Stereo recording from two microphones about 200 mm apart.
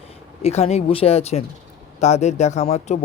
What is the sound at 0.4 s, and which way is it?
Speech, 30° left (ahead or behind).